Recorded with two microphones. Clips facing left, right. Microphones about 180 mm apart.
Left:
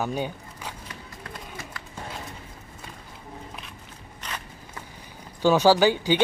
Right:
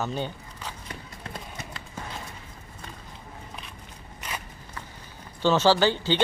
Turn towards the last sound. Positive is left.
turn(degrees=10)  # may be behind; listen again after turning